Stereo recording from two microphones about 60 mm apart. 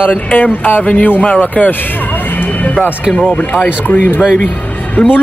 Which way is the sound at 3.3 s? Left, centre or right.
Left.